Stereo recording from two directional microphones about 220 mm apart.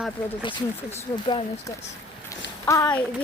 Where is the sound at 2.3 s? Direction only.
15° left (ahead or behind).